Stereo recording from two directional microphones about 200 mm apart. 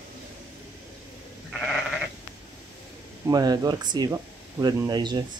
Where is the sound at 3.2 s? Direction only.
20° right (ahead or behind).